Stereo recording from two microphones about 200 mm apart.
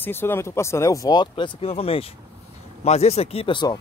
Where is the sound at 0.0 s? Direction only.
10° left (ahead or behind).